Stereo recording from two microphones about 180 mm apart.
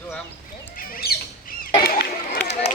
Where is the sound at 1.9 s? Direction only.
55° left (ahead or behind).